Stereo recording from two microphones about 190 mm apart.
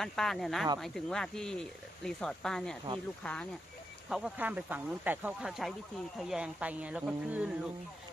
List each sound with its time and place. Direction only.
0.0 s speech: centre (ahead or behind)
4.1 s speech: 5° right (ahead or behind)